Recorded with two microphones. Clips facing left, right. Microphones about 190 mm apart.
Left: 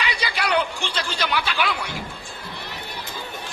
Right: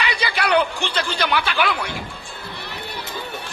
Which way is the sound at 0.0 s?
60° right (ahead or behind).